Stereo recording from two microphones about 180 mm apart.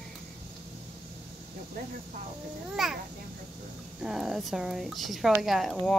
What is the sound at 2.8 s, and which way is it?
Speech, centre (ahead or behind).